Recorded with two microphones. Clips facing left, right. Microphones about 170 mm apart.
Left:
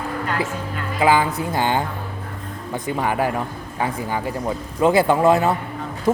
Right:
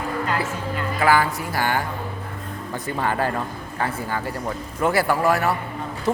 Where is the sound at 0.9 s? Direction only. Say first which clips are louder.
Left 2 dB; 20° left (ahead or behind).